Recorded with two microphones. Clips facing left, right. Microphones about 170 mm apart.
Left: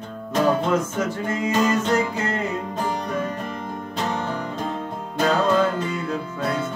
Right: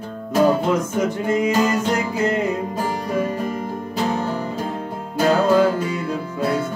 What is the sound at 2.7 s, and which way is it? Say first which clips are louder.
Music: right 3 dB; 5° right (ahead or behind).